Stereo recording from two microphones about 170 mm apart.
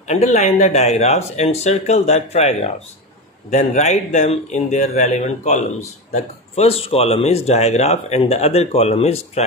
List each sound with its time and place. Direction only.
0.0 s speech: 40° left (ahead or behind)